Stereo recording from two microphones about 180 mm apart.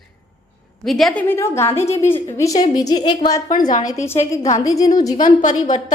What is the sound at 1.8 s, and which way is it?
Speech, 35° left (ahead or behind).